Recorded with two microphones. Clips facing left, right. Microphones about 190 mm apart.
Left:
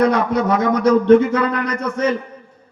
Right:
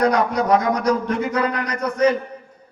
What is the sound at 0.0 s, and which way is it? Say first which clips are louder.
A man's voice: left 2 dB; 25° left (ahead or behind).